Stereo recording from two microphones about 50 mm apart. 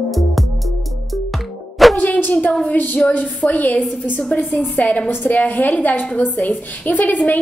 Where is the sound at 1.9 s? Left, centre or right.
Left.